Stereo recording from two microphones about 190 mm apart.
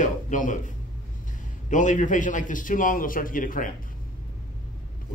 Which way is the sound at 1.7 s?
40° left (ahead or behind).